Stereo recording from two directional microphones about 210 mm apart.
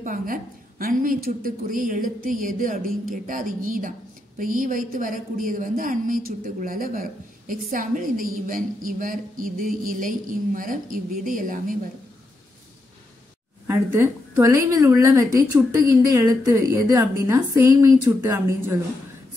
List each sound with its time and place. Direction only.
0.0 s a man's voice: 40° right (ahead or behind)
13.9 s a woman's voice: 10° right (ahead or behind)